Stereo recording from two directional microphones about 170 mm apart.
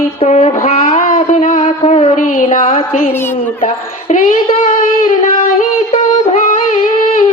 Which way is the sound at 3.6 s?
45° left (ahead or behind).